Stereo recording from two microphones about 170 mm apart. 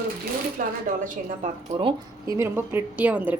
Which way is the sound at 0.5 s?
50° right (ahead or behind).